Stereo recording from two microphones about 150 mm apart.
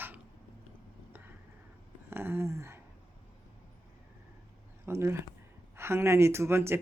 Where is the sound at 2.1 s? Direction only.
15° right (ahead or behind).